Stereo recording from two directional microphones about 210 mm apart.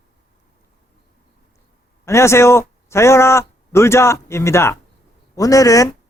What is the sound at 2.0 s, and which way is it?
A man's voice, 15° left (ahead or behind).